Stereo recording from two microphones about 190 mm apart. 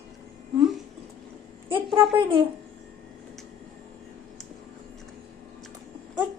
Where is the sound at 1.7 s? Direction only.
25° right (ahead or behind).